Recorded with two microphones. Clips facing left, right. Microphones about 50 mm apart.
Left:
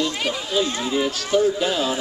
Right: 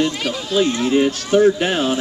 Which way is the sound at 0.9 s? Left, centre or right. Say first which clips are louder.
Right 5 dB; right.